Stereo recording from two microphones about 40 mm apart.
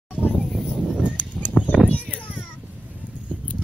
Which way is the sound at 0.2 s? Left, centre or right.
Centre.